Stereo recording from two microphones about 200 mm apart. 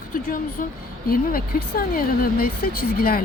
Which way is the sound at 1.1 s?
45° left (ahead or behind).